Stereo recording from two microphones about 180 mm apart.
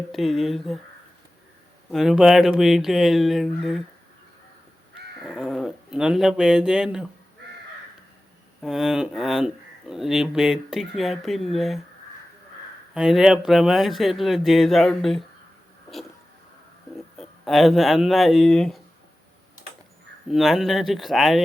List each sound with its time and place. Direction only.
0.1 s speech: centre (ahead or behind)
1.9 s speech: centre (ahead or behind)
5.2 s speech: centre (ahead or behind)
8.6 s speech: 5° right (ahead or behind)
12.9 s speech: 5° right (ahead or behind)
17.2 s speech: centre (ahead or behind)
20.2 s speech: centre (ahead or behind)